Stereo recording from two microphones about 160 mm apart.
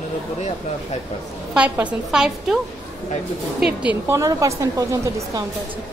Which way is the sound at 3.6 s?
10° right (ahead or behind).